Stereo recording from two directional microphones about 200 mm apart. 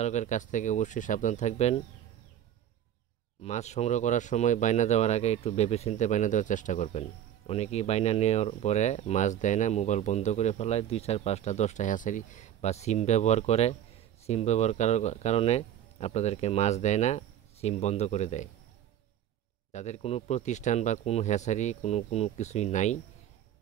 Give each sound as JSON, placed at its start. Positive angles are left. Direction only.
{"t": 0.0, "sound": "speech", "side_deg": 35}
{"t": 3.4, "sound": "speech", "side_deg": 35}
{"t": 19.7, "sound": "speech", "side_deg": 35}